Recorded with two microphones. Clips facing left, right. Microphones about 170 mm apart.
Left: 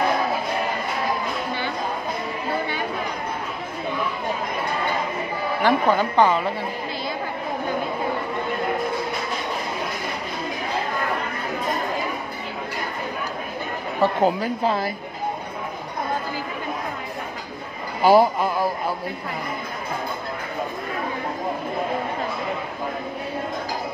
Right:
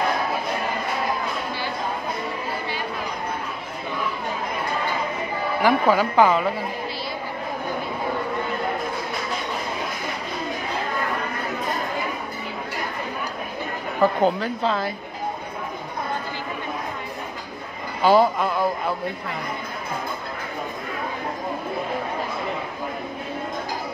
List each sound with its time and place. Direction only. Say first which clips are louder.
5.6 s a woman's voice: right 1 dB; 10° right (ahead or behind)
14.2 s a woman's voice: left 1 dB; 10° left (ahead or behind)
18.0 s a woman's voice: left 1 dB; 10° left (ahead or behind)